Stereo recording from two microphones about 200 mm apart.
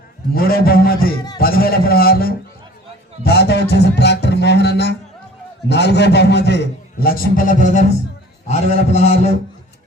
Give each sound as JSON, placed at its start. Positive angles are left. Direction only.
{"t": 0.3, "sound": "a man's voice", "side_deg": 50}
{"t": 3.2, "sound": "a sound", "side_deg": 55}
{"t": 5.6, "sound": "a man's voice", "side_deg": 60}
{"t": 8.4, "sound": "mantra", "side_deg": 30}